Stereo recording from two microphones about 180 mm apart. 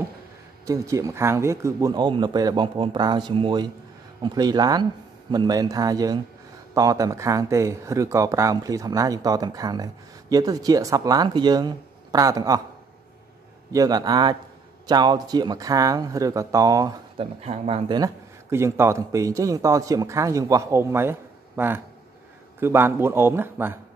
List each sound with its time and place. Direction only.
0.7 s speech: 15° right (ahead or behind)
13.7 s speech: 20° right (ahead or behind)
17.4 s speech: 35° right (ahead or behind); by 23.8 s 10° right (ahead or behind)